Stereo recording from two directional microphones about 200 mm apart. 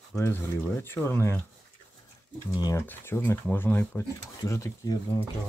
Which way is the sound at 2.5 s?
20° left (ahead or behind).